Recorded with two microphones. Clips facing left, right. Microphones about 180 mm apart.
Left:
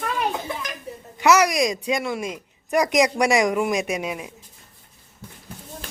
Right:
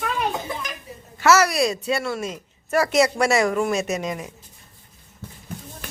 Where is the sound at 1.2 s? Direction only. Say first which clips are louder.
Even; 15° left (ahead or behind).